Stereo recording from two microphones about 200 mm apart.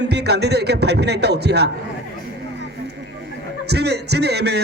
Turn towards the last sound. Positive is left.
turn(degrees=-55)  # may be behind; listen again after turning